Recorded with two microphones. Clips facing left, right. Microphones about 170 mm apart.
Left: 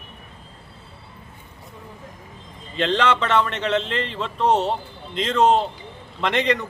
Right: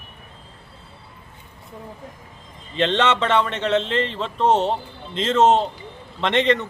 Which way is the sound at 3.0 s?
30° right (ahead or behind).